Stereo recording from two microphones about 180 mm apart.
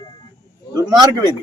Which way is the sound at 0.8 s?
20° right (ahead or behind).